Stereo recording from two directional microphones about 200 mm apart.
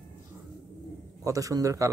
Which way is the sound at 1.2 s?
15° right (ahead or behind).